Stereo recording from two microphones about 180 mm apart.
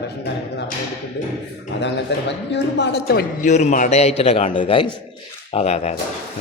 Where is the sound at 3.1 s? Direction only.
55° left (ahead or behind).